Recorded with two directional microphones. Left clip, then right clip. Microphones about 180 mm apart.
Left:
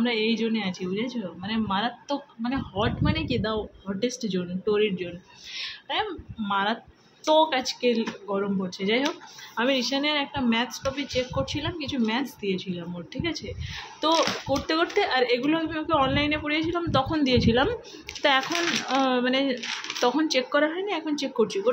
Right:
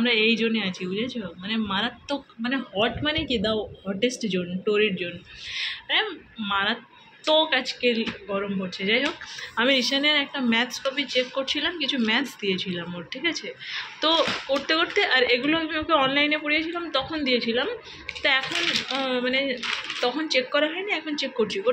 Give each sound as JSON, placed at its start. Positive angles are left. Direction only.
{"t": 0.0, "sound": "speech", "side_deg": 5}
{"t": 9.6, "sound": "speech", "side_deg": 5}
{"t": 16.5, "sound": "speech", "side_deg": 25}
{"t": 17.0, "sound": "speech", "side_deg": 35}
{"t": 18.9, "sound": "speech", "side_deg": 35}